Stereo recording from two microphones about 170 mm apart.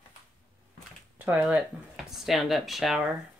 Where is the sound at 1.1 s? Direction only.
10° right (ahead or behind).